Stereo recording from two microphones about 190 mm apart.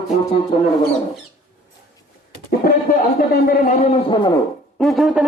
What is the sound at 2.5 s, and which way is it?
Speech, 50° left (ahead or behind).